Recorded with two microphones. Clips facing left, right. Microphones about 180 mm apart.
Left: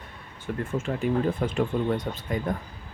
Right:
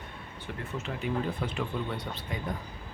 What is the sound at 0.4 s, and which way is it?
Speech, 50° left (ahead or behind).